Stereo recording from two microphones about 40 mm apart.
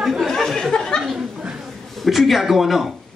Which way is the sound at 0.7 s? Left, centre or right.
Left.